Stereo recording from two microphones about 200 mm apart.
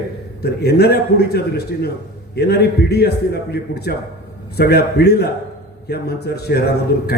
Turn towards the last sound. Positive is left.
turn(degrees=55)  # may be behind; listen again after turning